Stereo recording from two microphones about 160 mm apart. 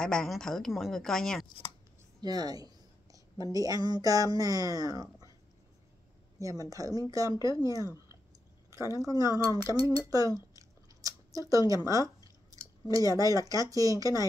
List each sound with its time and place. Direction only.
0.0 s a woman's voice: 5° left (ahead or behind)
2.2 s writing: 25° right (ahead or behind)
3.5 s speech: 20° right (ahead or behind)
6.4 s speech: 20° right (ahead or behind)
8.9 s speech: 20° right (ahead or behind)
9.2 s speech: 25° left (ahead or behind)
10.0 s speech: 20° right (ahead or behind)